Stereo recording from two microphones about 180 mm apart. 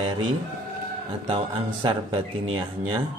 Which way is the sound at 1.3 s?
30° right (ahead or behind).